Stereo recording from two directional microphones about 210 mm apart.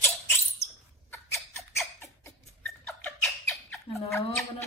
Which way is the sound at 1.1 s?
10° left (ahead or behind).